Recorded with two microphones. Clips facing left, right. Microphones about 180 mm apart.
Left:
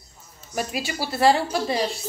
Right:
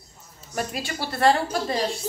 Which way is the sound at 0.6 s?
5° left (ahead or behind).